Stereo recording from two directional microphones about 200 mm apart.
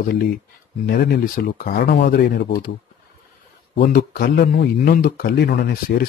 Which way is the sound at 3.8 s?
50° left (ahead or behind).